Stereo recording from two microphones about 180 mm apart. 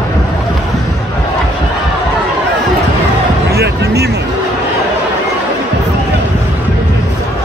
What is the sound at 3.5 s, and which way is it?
Music, 65° right (ahead or behind).